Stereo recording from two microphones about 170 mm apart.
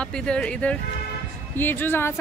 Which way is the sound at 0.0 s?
5° left (ahead or behind).